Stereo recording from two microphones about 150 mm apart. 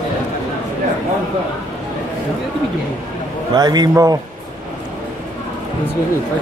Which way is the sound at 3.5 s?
30° right (ahead or behind).